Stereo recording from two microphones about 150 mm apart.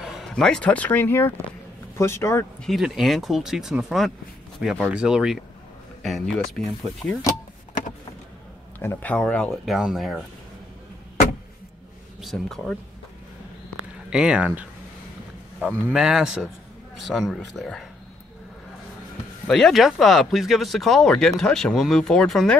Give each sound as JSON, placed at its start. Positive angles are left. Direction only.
{"t": 0.0, "sound": "speech", "side_deg": 0}
{"t": 2.6, "sound": "speech", "side_deg": 0}
{"t": 8.7, "sound": "speech", "side_deg": 10}
{"t": 12.2, "sound": "speech", "side_deg": 0}
{"t": 14.1, "sound": "speech", "side_deg": -5}
{"t": 15.9, "sound": "speech", "side_deg": -5}
{"t": 19.4, "sound": "speech", "side_deg": 0}